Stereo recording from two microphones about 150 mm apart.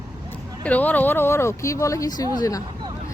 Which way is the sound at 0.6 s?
10° left (ahead or behind).